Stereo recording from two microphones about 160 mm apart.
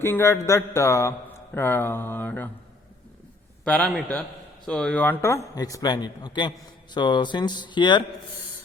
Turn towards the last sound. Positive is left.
turn(degrees=30)  # may be behind; listen again after turning